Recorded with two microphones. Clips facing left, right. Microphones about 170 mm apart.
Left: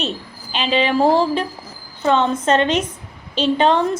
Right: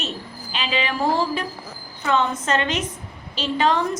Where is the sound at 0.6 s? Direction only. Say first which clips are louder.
Left 7 dB; 30° left (ahead or behind).